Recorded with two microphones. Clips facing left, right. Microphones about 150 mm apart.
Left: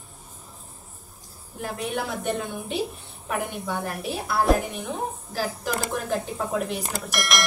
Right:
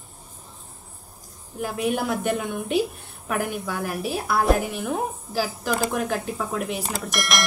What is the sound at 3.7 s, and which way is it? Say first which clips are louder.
Bell: right 2 dB; centre (ahead or behind).